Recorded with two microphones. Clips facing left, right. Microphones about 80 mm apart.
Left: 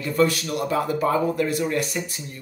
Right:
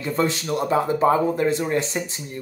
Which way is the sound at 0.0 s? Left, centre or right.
Right.